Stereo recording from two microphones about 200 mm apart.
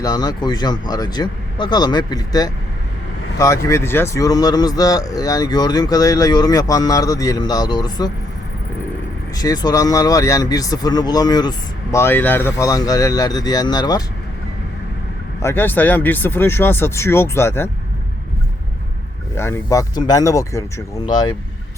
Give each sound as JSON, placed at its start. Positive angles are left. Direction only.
{"t": 0.0, "sound": "speech", "side_deg": 20}
{"t": 9.3, "sound": "speech", "side_deg": 20}
{"t": 15.4, "sound": "speech", "side_deg": 10}
{"t": 19.4, "sound": "speech", "side_deg": 15}